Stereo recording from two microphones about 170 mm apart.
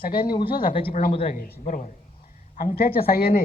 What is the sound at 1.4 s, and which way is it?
Speech, 50° left (ahead or behind).